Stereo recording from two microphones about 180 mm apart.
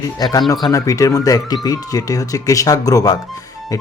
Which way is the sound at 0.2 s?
20° left (ahead or behind).